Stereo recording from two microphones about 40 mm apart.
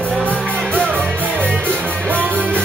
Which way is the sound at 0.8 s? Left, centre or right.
Right.